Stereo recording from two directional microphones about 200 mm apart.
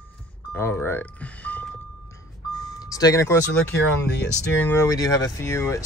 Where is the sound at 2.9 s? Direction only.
20° left (ahead or behind).